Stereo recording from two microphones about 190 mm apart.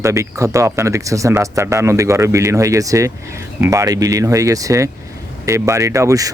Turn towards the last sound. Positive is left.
turn(degrees=-15)  # may be behind; listen again after turning